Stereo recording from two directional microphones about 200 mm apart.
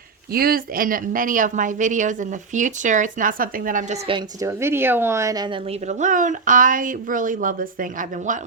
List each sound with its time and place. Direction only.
0.3 s speech: 45° right (ahead or behind)
4.0 s a woman's voice: 20° right (ahead or behind)
5.9 s speech: 40° right (ahead or behind)